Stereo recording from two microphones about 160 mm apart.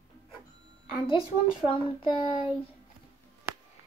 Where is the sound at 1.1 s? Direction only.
35° left (ahead or behind).